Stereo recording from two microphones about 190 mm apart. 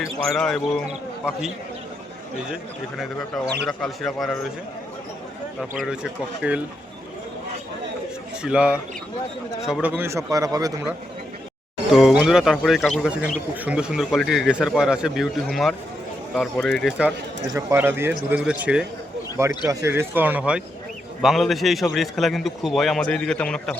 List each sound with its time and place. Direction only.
0.3 s a man's voice: 5° left (ahead or behind)
3.7 s a man's voice: centre (ahead or behind)
5.8 s a man's voice: 5° right (ahead or behind)
8.4 s a man's voice: 5° right (ahead or behind)
11.9 s a man's voice: centre (ahead or behind)
17.5 s a man's voice: 15° right (ahead or behind); by 23.7 s 5° left (ahead or behind)